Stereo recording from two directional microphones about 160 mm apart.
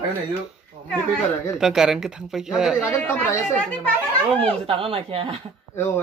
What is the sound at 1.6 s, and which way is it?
Speech, 5° right (ahead or behind).